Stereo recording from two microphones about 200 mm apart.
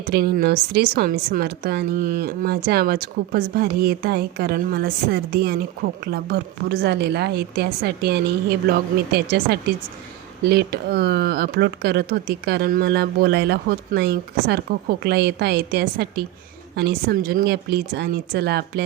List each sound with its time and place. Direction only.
0.1 s speech: 50° right (ahead or behind)